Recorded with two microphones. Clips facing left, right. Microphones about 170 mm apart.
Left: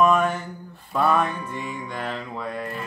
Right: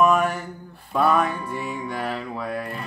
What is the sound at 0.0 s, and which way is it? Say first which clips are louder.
Mantra: even; 10° right (ahead or behind).